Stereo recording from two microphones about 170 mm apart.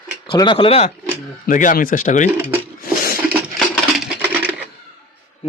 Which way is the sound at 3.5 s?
Centre (ahead or behind).